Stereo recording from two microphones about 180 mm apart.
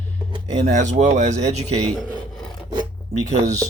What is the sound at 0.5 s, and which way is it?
Speech, 40° right (ahead or behind).